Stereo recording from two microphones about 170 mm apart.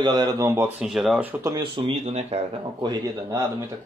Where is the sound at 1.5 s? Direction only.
30° right (ahead or behind).